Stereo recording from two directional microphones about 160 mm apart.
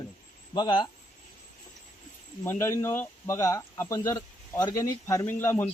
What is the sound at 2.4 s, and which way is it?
Speech, 15° left (ahead or behind).